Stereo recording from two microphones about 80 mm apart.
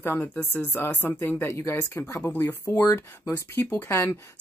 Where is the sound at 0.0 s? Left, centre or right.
Left.